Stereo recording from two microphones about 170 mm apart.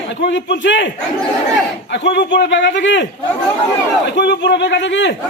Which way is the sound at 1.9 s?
90° left.